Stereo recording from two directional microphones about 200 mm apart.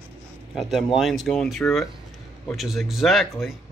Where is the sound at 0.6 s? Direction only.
Centre (ahead or behind).